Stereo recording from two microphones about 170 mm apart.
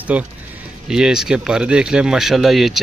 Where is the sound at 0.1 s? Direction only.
5° right (ahead or behind).